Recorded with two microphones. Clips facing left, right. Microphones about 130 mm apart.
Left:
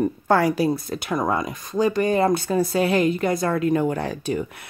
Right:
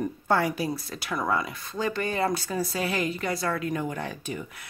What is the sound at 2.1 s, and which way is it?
Speech, 50° left (ahead or behind).